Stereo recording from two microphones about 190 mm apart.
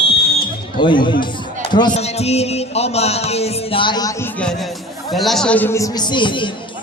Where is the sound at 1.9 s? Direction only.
35° left (ahead or behind).